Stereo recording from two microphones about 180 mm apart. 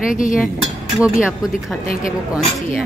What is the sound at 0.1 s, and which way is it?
Speech, 50° left (ahead or behind).